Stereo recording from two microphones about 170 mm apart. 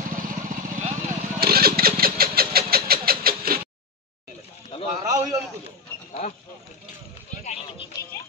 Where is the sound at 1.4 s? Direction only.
65° right (ahead or behind).